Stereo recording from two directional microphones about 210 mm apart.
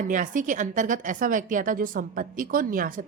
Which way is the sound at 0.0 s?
40° right (ahead or behind).